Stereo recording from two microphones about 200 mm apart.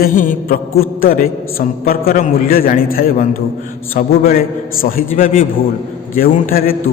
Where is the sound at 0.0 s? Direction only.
40° left (ahead or behind).